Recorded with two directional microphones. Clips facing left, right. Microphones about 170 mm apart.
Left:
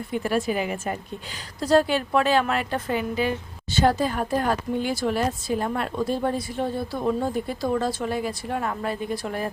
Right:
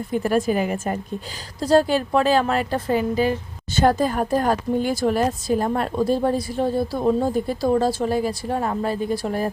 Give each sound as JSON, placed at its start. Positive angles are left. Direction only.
{"t": 0.1, "sound": "a woman's voice", "side_deg": -45}
{"t": 3.8, "sound": "speech", "side_deg": -50}